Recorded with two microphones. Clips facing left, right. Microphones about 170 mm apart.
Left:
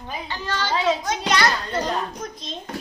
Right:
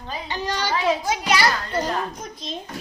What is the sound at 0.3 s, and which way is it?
A child's voice, 15° right (ahead or behind).